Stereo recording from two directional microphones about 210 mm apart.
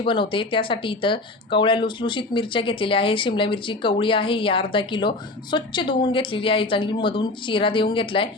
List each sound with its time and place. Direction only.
0.0 s speech: 25° left (ahead or behind)